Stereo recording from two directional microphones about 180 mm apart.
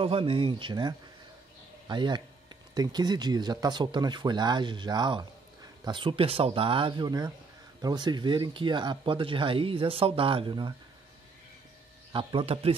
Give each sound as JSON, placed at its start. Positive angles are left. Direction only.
{"t": 0.0, "sound": "speech", "side_deg": -30}
{"t": 12.1, "sound": "speech", "side_deg": -30}